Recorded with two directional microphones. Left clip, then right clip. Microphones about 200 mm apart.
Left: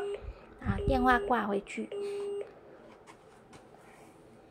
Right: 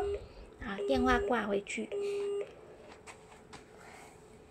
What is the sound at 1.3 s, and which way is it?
Speech, 5° left (ahead or behind).